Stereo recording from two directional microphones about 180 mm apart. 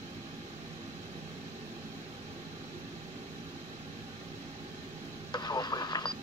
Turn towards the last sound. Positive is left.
turn(degrees=20)  # may be behind; listen again after turning